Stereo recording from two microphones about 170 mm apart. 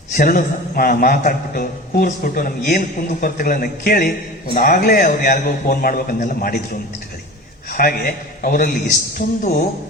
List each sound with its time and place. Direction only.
0.2 s a man's voice: 55° left (ahead or behind)
7.7 s a man's voice: 55° left (ahead or behind)